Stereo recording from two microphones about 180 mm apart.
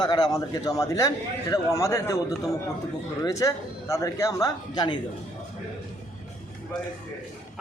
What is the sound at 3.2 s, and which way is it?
A man's voice, 20° left (ahead or behind).